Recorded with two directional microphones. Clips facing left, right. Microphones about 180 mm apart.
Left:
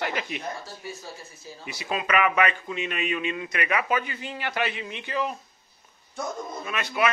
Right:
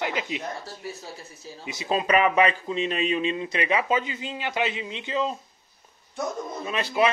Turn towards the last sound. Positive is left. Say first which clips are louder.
# right 3 dB
turn(degrees=-30)  # may be behind; listen again after turning